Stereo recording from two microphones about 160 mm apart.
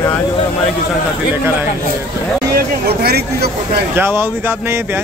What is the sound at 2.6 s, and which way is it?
Speech, 75° right (ahead or behind).